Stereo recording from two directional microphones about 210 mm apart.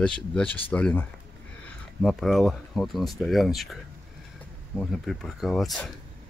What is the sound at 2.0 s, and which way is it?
Speech, centre (ahead or behind).